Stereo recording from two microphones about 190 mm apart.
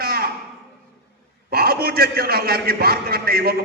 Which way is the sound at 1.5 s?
55° right (ahead or behind).